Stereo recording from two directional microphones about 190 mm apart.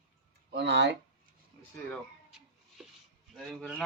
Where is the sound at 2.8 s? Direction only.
Centre (ahead or behind).